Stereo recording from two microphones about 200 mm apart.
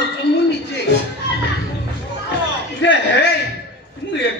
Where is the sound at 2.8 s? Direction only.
65° left (ahead or behind).